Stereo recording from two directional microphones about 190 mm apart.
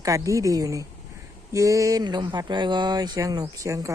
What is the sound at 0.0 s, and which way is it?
A woman's voice, 15° right (ahead or behind).